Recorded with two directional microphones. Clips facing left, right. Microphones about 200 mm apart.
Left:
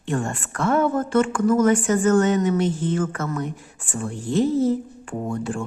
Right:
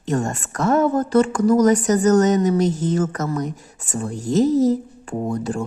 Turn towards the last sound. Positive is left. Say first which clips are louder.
# right 3 dB
turn(degrees=-40)  # may be behind; listen again after turning